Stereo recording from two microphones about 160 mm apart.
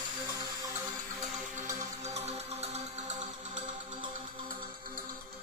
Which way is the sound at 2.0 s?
45° right (ahead or behind).